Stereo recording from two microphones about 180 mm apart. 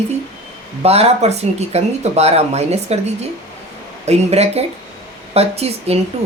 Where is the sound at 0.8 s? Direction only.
35° right (ahead or behind).